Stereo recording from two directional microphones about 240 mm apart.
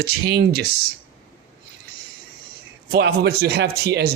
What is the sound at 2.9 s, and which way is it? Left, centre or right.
Speech, right.